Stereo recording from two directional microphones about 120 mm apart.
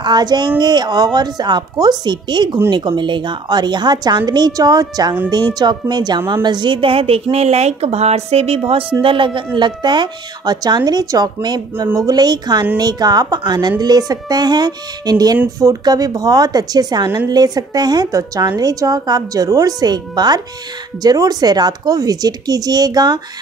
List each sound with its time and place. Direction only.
0.0 s a woman's voice: 35° right (ahead or behind)